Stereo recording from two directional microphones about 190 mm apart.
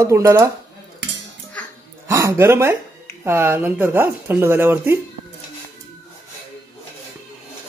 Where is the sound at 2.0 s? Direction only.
15° right (ahead or behind).